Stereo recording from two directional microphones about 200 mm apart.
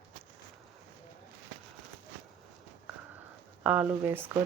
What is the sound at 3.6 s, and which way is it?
Speech, 10° right (ahead or behind).